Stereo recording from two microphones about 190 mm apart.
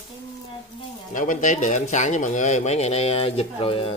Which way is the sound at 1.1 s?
40° left (ahead or behind).